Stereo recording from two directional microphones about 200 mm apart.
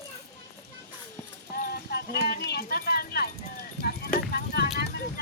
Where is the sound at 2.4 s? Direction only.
50° left (ahead or behind).